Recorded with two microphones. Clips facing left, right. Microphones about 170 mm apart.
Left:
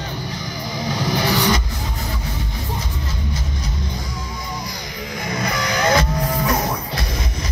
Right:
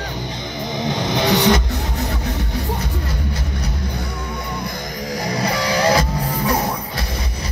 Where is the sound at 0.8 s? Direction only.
20° right (ahead or behind).